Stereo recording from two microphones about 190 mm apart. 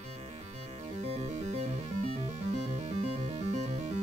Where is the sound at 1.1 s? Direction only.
35° right (ahead or behind).